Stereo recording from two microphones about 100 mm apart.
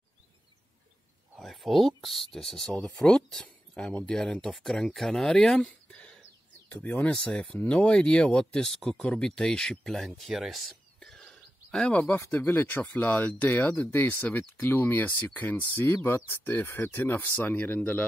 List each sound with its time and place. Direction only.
1.3 s speech: centre (ahead or behind)
5.7 s a sound: 10° left (ahead or behind)
6.7 s speech: 15° left (ahead or behind)
12.0 s speech: 20° left (ahead or behind)